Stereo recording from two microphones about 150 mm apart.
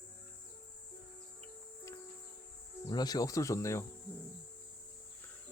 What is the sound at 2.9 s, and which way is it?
Speech, 25° left (ahead or behind).